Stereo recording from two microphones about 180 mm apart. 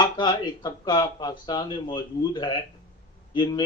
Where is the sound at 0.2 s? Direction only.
25° left (ahead or behind).